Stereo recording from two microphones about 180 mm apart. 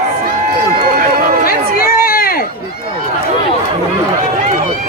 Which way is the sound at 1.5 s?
55° left (ahead or behind).